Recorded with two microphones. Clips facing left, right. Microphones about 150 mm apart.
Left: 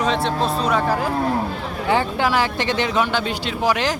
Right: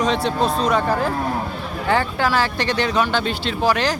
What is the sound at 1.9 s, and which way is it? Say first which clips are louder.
Speech: even; 15° left (ahead or behind).